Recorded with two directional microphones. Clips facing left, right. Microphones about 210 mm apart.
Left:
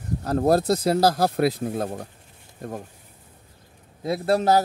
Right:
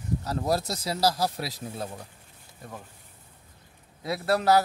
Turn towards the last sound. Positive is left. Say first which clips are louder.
# left 3 dB
turn(degrees=25)  # may be behind; listen again after turning